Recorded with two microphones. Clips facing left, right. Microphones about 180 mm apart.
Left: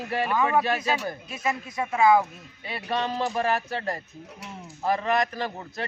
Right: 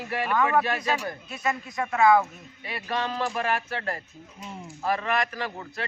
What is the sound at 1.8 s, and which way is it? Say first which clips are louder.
A man's voice: even; 15° left (ahead or behind).